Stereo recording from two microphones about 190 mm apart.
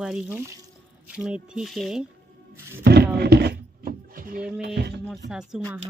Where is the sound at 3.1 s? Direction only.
60° right (ahead or behind).